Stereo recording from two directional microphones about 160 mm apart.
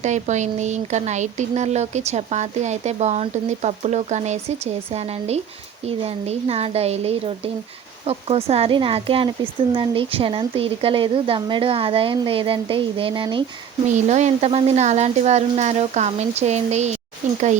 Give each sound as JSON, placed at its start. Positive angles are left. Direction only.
{"t": 0.0, "sound": "speech", "side_deg": -50}
{"t": 13.8, "sound": "speech", "side_deg": -45}